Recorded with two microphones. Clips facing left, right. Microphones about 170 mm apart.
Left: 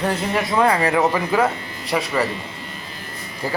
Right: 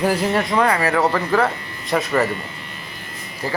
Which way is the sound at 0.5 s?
20° left (ahead or behind).